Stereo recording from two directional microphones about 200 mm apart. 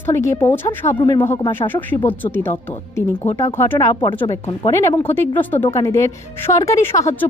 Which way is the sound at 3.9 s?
25° left (ahead or behind).